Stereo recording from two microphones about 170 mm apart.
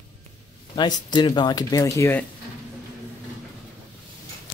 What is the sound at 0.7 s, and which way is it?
Speech, 25° left (ahead or behind).